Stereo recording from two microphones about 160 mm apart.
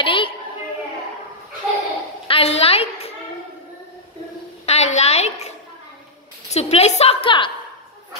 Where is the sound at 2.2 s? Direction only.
35° left (ahead or behind).